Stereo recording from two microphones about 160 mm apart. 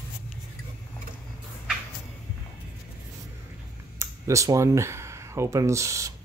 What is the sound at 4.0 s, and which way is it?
Speech, 20° right (ahead or behind).